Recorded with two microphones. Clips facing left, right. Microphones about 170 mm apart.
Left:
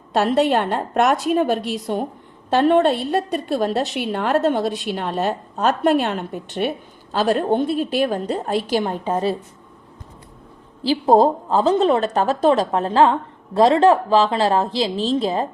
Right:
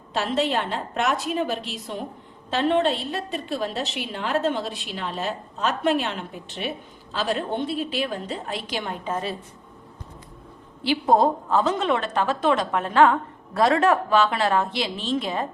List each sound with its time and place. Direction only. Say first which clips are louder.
0.1 s a woman's voice: left 7 dB; 50° left (ahead or behind)
10.8 s a woman's voice: left 5 dB; 30° left (ahead or behind)